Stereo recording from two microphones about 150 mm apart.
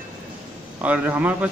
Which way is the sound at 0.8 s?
10° right (ahead or behind).